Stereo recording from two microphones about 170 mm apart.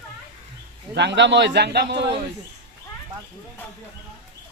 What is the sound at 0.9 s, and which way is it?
A man's voice, 90° right.